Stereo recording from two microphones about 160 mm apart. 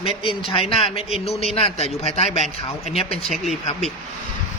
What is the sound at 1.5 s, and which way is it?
Speech, 40° left (ahead or behind).